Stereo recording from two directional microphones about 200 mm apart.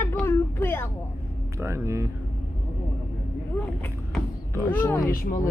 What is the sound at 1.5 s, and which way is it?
Speech, 15° right (ahead or behind).